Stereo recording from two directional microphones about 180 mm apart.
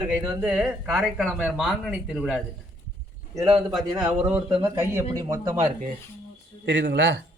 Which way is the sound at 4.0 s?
10° right (ahead or behind).